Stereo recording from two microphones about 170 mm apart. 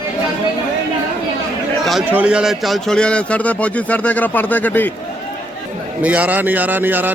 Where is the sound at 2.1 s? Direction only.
10° right (ahead or behind); by 4.9 s 10° left (ahead or behind).